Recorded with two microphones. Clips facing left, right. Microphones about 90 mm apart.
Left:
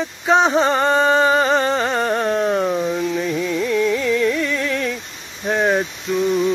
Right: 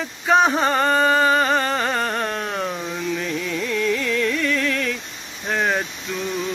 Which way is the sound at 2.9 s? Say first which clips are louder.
Left 4 dB; 20° left (ahead or behind).